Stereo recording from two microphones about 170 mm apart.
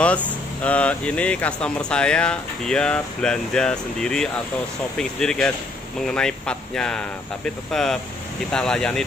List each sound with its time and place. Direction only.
0.0 s speech: 10° left (ahead or behind)